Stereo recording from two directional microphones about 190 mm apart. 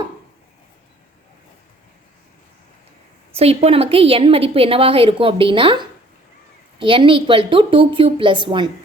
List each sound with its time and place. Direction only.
3.3 s a woman's voice: 30° right (ahead or behind)
6.7 s a woman's voice: 25° right (ahead or behind)